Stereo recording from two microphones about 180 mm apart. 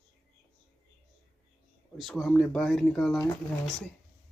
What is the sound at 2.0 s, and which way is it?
Speech, centre (ahead or behind).